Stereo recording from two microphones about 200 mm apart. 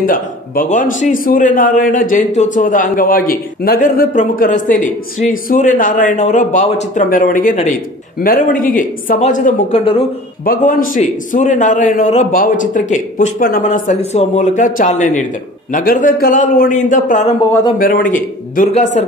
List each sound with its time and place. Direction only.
0.0 s a man's voice: 45° left (ahead or behind)
10.4 s a man's voice: 45° left (ahead or behind)